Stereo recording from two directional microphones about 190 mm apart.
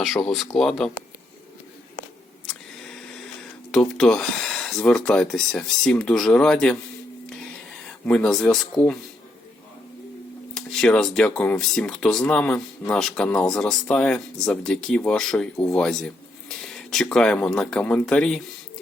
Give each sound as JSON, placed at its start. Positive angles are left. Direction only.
{"t": 0.0, "sound": "speech", "side_deg": 0}
{"t": 2.5, "sound": "a sound", "side_deg": 5}
{"t": 3.7, "sound": "speech", "side_deg": 5}
{"t": 7.9, "sound": "speech", "side_deg": 5}
{"t": 10.5, "sound": "speech", "side_deg": 5}